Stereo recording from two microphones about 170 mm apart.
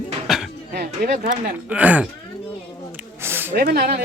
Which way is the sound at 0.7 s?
70° right (ahead or behind).